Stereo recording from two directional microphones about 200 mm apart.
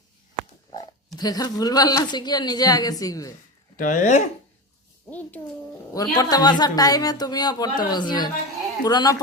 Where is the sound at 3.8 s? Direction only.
40° left (ahead or behind).